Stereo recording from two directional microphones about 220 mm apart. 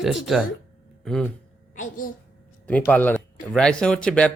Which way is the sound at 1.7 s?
35° left (ahead or behind).